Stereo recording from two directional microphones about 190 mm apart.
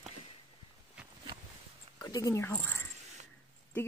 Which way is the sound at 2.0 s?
20° left (ahead or behind).